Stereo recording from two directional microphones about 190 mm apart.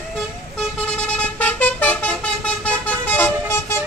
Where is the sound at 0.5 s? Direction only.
5° left (ahead or behind).